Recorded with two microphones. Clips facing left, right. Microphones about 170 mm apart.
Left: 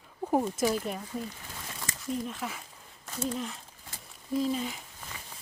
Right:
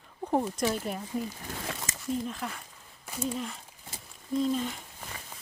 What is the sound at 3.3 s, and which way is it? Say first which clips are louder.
Speech: even; centre (ahead or behind).